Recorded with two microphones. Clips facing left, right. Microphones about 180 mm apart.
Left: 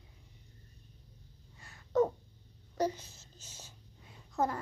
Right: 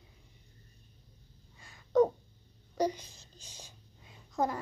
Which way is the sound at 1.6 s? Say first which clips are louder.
Right 3 dB; 15° right (ahead or behind).